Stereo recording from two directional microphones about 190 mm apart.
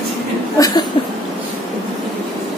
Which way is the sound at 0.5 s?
20° left (ahead or behind).